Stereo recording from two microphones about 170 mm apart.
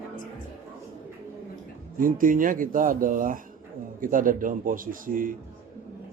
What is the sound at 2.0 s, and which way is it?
A man's voice, 55° right (ahead or behind).